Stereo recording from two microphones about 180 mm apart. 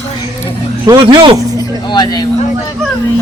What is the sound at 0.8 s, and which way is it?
Speech, 25° right (ahead or behind).